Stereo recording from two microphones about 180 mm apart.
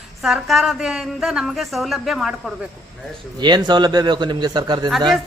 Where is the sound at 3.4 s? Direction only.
25° right (ahead or behind).